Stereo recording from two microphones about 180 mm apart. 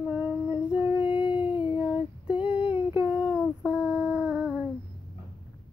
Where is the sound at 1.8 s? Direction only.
5° right (ahead or behind).